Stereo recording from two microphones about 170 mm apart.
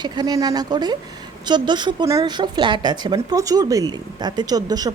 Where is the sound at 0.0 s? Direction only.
25° right (ahead or behind).